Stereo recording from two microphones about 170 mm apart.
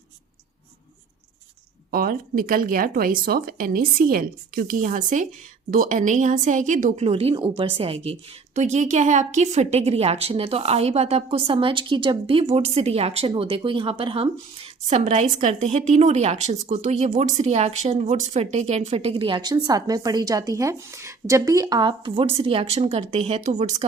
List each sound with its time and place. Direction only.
1.9 s a woman's voice: 60° right (ahead or behind); by 23.8 s 40° right (ahead or behind)